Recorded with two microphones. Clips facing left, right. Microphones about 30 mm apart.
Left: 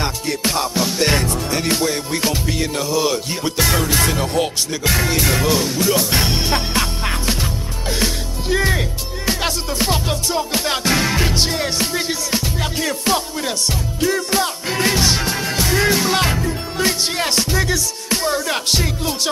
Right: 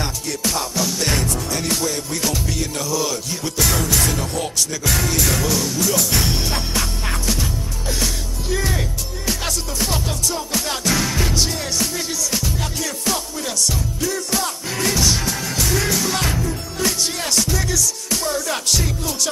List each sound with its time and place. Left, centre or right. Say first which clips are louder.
0.0 s music: left 3 dB; left
8.0 s speech: left 3 dB; left
12.8 s music: left 6 dB; left